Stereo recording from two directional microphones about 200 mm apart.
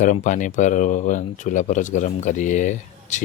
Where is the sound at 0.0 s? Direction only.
40° left (ahead or behind).